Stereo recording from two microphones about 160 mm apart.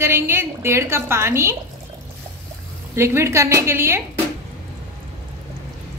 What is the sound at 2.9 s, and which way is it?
A woman's voice, 15° right (ahead or behind).